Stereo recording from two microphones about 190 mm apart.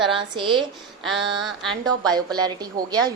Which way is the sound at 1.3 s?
Centre (ahead or behind).